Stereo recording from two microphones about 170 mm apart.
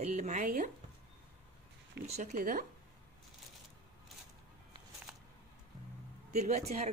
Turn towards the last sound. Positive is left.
turn(degrees=-40)  # may be behind; listen again after turning